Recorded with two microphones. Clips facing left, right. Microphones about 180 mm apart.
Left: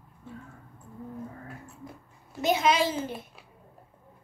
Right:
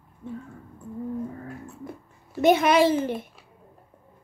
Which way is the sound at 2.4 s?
60° right (ahead or behind).